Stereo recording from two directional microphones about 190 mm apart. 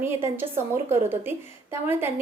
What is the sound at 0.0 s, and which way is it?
A woman's voice, 10° right (ahead or behind).